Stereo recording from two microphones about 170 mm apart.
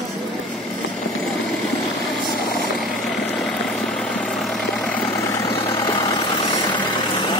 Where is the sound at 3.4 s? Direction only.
5° left (ahead or behind).